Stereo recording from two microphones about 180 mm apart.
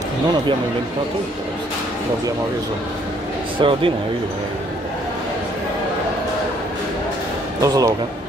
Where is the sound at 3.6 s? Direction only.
30° right (ahead or behind).